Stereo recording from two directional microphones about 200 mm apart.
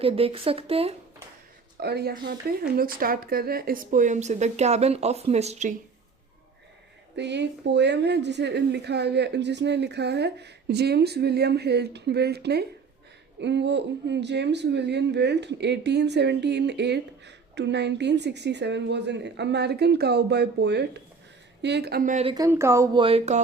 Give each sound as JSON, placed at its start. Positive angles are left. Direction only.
{"t": 0.0, "sound": "speech", "side_deg": -30}
{"t": 1.8, "sound": "speech", "side_deg": -55}
{"t": 7.2, "sound": "speech", "side_deg": -60}
{"t": 22.1, "sound": "speech", "side_deg": -30}
{"t": 22.4, "sound": "speech", "side_deg": -15}